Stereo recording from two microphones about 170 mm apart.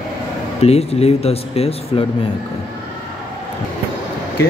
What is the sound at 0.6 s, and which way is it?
Speech, 35° left (ahead or behind).